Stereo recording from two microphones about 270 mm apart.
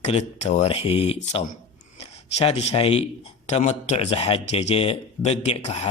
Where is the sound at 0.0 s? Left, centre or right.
Left.